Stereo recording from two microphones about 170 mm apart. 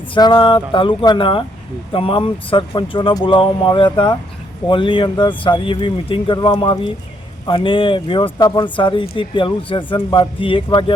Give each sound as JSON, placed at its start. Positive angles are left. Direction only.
{"t": 0.1, "sound": "speech", "side_deg": 25}